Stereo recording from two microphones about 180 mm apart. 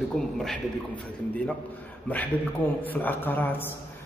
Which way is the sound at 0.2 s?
5° left (ahead or behind).